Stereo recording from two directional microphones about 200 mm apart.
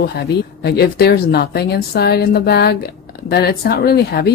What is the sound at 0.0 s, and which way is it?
Speech, 55° left (ahead or behind).